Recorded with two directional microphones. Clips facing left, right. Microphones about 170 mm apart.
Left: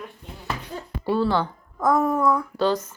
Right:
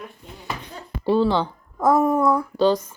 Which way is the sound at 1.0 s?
20° right (ahead or behind).